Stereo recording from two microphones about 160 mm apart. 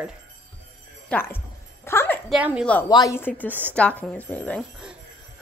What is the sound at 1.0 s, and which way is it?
Music, 15° left (ahead or behind).